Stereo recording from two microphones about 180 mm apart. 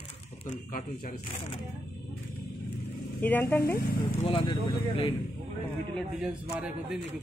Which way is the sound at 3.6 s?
65° left (ahead or behind).